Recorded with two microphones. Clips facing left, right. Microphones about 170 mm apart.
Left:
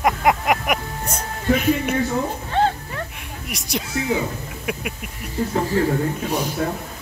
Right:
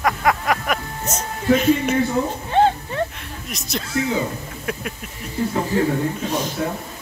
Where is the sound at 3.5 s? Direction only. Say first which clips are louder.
Right 1 dB; 15° left (ahead or behind).